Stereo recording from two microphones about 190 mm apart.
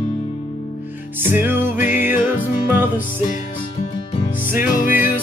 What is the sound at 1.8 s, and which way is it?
Music, 40° left (ahead or behind).